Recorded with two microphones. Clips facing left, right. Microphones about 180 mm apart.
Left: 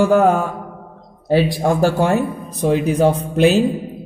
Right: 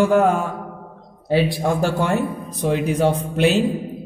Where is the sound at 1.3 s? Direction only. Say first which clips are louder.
Left 3 dB; 40° left (ahead or behind).